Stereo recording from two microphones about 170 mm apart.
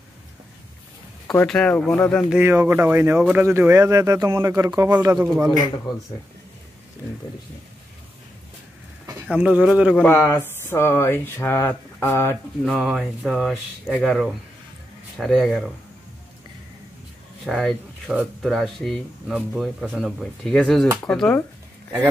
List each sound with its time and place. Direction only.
1.4 s speech: 5° left (ahead or behind)
2.2 s speech: 10° right (ahead or behind)
9.3 s speech: 5° right (ahead or behind)
10.0 s speech: 15° left (ahead or behind)
12.6 s speech: centre (ahead or behind)
17.5 s speech: centre (ahead or behind)